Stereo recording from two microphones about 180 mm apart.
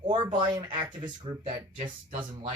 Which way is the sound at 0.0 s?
30° right (ahead or behind).